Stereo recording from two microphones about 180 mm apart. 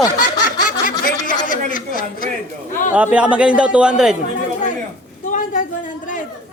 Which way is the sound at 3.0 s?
10° right (ahead or behind).